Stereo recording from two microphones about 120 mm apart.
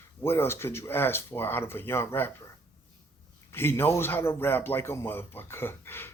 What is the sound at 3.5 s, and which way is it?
Speech, 20° left (ahead or behind).